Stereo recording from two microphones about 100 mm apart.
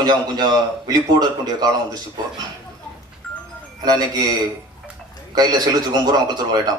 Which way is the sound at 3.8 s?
40° right (ahead or behind).